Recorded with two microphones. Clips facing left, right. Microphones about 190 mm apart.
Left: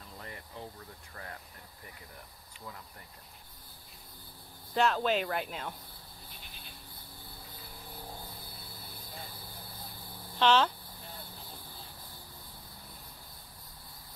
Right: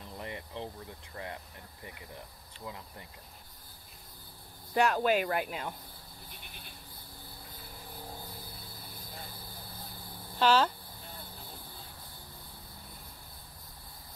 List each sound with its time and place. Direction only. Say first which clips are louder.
0.2 s air conditioning: right 5 dB; 25° right (ahead or behind)
1.1 s speech: right 5 dB; 20° right (ahead or behind)
4.7 s speech: right 2 dB; 10° right (ahead or behind)
10.4 s speech: even; 5° right (ahead or behind)